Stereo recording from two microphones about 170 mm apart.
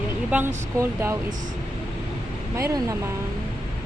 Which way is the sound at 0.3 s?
10° right (ahead or behind).